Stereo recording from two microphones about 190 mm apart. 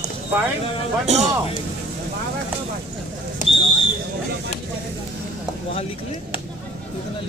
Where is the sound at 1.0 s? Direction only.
35° right (ahead or behind).